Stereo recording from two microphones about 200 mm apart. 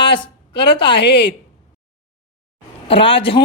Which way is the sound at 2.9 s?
25° left (ahead or behind).